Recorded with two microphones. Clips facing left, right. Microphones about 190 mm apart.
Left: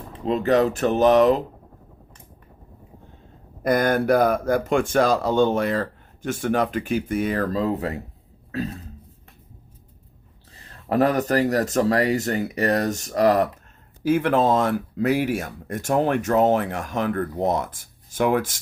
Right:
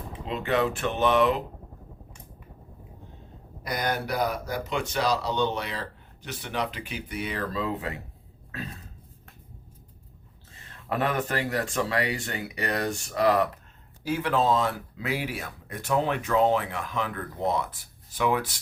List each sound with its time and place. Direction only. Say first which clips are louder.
0.3 s speech: left 7 dB; 40° left (ahead or behind)
3.6 s speech: left 10 dB; 50° left (ahead or behind)
10.5 s speech: left 8 dB; 35° left (ahead or behind)